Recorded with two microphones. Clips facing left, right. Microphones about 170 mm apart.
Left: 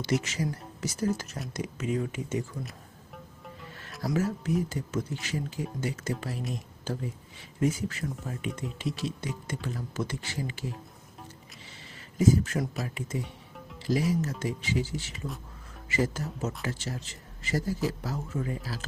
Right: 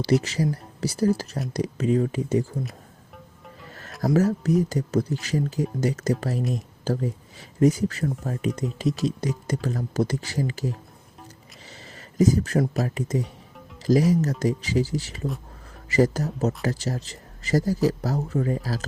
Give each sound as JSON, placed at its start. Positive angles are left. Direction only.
{"t": 0.0, "sound": "a man's voice", "side_deg": -35}
{"t": 4.0, "sound": "a man's voice", "side_deg": -40}
{"t": 11.7, "sound": "a sound", "side_deg": -40}
{"t": 12.8, "sound": "a man's voice", "side_deg": -40}